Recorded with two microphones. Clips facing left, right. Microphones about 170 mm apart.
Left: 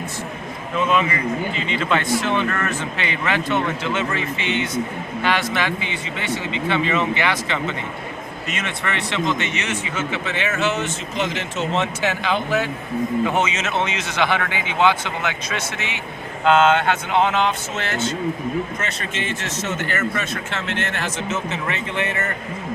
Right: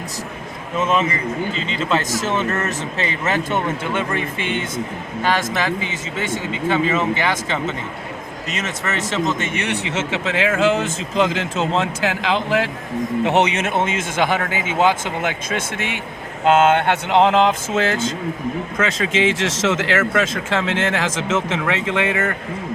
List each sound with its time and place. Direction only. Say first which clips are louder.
0.8 s speech: right 1 dB; 40° right (ahead or behind); by 10.7 s 90° right
11.8 s speech: right 1 dB; 90° right
13.2 s speech: right 4 dB; 70° right (ahead or behind); by 16.7 s 45° right (ahead or behind)
17.1 s speech: right 6 dB; 90° right
18.9 s speech: right 8 dB; 90° right